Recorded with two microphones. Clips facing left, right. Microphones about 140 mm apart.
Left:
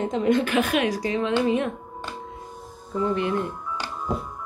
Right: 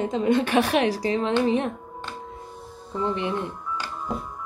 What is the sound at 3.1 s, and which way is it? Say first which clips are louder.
Speech: left 4 dB; 20° right (ahead or behind).